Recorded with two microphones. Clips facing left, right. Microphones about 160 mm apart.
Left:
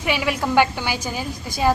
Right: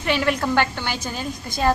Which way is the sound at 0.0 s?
10° left (ahead or behind).